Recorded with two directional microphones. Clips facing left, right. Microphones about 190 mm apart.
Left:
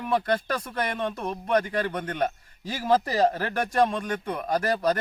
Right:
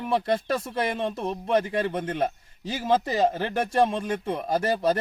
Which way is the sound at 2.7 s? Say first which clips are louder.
Even; centre (ahead or behind).